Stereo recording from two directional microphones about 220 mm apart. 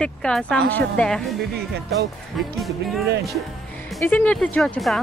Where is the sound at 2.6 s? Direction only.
Centre (ahead or behind).